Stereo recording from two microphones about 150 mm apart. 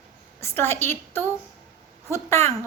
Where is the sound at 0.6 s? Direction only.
15° left (ahead or behind).